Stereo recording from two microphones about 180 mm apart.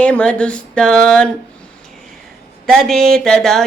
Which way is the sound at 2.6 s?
5° left (ahead or behind).